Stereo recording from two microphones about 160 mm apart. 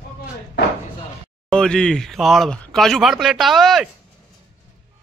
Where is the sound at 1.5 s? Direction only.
5° left (ahead or behind).